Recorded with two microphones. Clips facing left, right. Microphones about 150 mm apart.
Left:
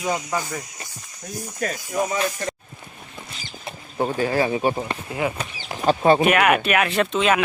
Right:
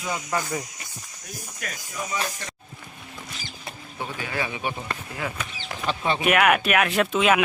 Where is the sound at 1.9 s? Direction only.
50° left (ahead or behind).